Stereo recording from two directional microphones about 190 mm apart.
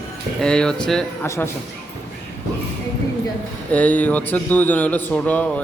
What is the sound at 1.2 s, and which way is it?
Speech, 15° left (ahead or behind).